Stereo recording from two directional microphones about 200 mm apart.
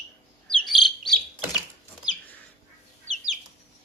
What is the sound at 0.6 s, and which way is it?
Bird, centre (ahead or behind).